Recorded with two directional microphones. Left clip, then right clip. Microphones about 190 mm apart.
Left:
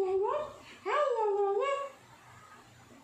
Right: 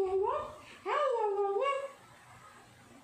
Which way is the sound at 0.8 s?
5° left (ahead or behind).